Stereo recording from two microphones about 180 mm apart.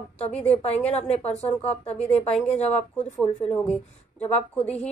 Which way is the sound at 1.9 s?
5° left (ahead or behind).